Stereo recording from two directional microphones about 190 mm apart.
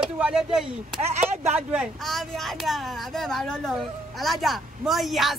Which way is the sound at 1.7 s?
Centre (ahead or behind).